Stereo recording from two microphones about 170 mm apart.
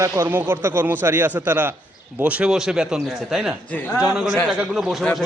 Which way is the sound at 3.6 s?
10° left (ahead or behind).